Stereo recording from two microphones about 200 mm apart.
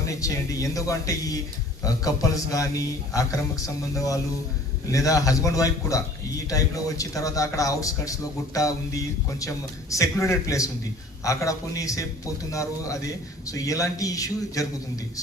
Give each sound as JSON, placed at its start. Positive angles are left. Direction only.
{"t": 0.2, "sound": "speech", "side_deg": 15}
{"t": 4.9, "sound": "speech", "side_deg": 15}